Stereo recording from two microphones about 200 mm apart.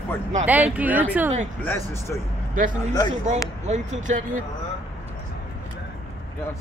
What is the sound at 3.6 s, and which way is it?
Speech, 35° right (ahead or behind).